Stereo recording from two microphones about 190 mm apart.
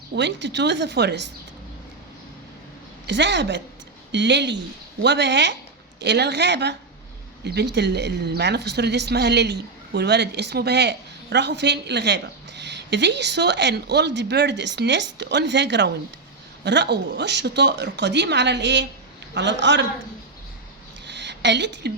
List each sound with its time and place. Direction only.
0.1 s a woman's voice: 65° right (ahead or behind)
3.1 s a woman's voice: 65° right (ahead or behind)
21.1 s a sound: 65° right (ahead or behind)